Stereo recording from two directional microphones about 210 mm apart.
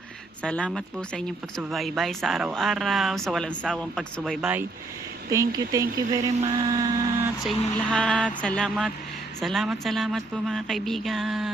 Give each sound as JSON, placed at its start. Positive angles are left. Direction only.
{"t": 0.4, "sound": "speech", "side_deg": 5}
{"t": 7.4, "sound": "speech", "side_deg": 5}